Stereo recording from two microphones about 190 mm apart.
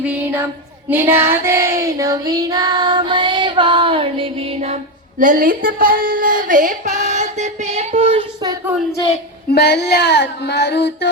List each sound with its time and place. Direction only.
0.0 s a sound: 10° right (ahead or behind)
0.9 s child singing: 10° right (ahead or behind); by 4.8 s 35° right (ahead or behind)
5.2 s female singing: 45° right (ahead or behind); by 8.5 s 25° right (ahead or behind)
9.5 s child singing: 60° left (ahead or behind)